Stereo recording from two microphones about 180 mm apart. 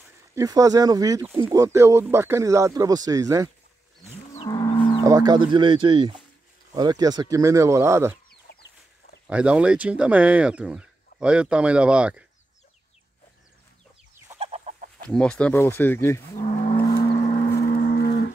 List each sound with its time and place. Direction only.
0.4 s speech: 20° right (ahead or behind)
4.4 s moo: 25° left (ahead or behind)
5.0 s speech: 20° right (ahead or behind)
8.5 s chicken: 65° left (ahead or behind)
9.3 s speech: 5° right (ahead or behind)
14.4 s chicken: 40° right (ahead or behind)
15.0 s speech: 5° left (ahead or behind)
16.4 s moo: 40° left (ahead or behind)
16.8 s a sound: 20° left (ahead or behind)
17.6 s a sound: 50° left (ahead or behind)